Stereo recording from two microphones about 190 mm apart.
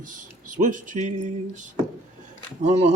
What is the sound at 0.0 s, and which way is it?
Speech, 45° right (ahead or behind).